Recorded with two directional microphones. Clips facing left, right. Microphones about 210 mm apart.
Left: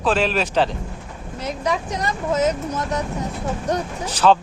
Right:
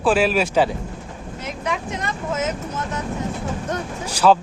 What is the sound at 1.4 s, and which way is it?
Speech, 35° left (ahead or behind).